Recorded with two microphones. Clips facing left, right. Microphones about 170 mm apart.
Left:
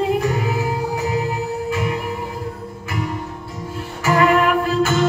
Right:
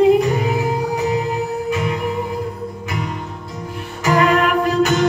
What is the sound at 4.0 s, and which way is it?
Music, 20° right (ahead or behind).